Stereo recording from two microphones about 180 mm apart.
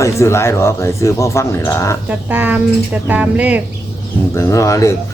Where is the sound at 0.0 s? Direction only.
15° left (ahead or behind).